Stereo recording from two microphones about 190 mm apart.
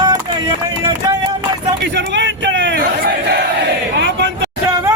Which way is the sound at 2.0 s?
65° right (ahead or behind).